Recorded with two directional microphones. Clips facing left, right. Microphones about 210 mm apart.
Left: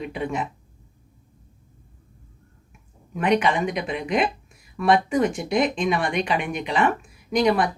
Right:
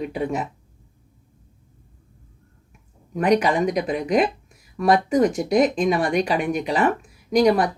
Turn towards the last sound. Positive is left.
turn(degrees=-40)  # may be behind; listen again after turning